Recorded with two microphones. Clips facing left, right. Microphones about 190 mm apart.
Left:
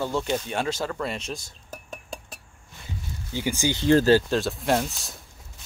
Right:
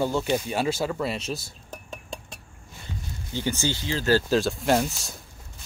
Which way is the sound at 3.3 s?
15° left (ahead or behind).